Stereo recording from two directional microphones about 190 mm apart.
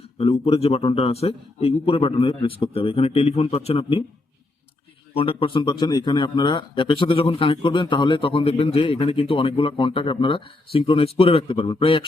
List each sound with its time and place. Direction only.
0.2 s a man's voice: 30° left (ahead or behind)
5.1 s a man's voice: 30° left (ahead or behind)